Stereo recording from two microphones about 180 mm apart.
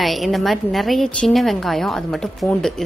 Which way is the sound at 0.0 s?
Centre (ahead or behind).